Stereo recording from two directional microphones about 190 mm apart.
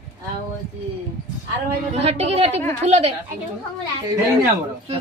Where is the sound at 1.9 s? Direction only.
35° right (ahead or behind).